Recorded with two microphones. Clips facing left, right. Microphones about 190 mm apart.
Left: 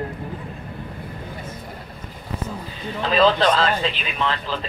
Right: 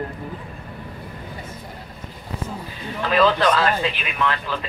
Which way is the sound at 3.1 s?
25° left (ahead or behind).